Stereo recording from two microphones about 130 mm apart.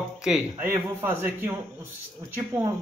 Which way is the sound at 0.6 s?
15° right (ahead or behind).